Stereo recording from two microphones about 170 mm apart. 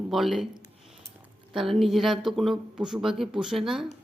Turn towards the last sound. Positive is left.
turn(degrees=0)  # may be behind; listen again after turning